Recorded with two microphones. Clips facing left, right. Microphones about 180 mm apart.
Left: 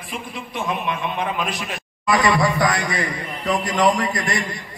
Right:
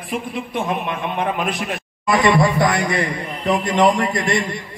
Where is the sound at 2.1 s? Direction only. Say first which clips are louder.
Right 3 dB; 25° right (ahead or behind).